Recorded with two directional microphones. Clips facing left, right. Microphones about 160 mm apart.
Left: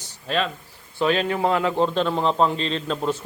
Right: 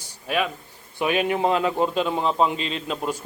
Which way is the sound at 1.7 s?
10° right (ahead or behind).